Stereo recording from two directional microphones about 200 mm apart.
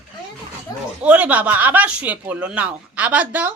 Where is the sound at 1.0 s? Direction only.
5° right (ahead or behind).